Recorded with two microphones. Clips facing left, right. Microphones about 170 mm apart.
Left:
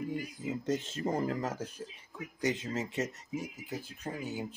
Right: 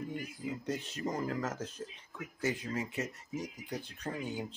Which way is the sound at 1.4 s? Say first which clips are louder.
Left 1 dB; 10° left (ahead or behind).